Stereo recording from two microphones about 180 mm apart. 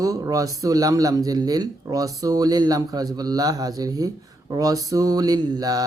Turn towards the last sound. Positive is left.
turn(degrees=-20)  # may be behind; listen again after turning